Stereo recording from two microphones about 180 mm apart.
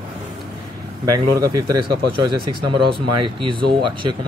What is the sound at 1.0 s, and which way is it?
Speech, 20° right (ahead or behind).